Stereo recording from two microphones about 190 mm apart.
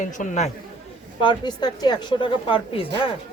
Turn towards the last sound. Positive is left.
turn(degrees=30)  # may be behind; listen again after turning